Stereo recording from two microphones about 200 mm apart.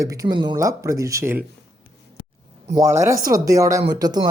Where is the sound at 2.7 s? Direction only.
15° right (ahead or behind).